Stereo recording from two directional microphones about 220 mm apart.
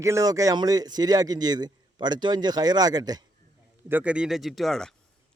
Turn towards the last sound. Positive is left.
turn(degrees=0)  # may be behind; listen again after turning